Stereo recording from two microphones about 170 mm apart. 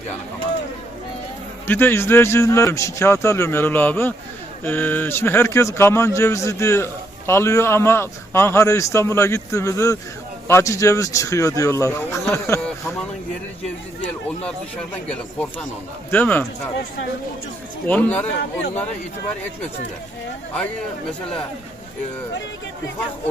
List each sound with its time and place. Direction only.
1.6 s a man's voice: 15° left (ahead or behind)
16.1 s a man's voice: 10° left (ahead or behind)
17.8 s a man's voice: 10° left (ahead or behind)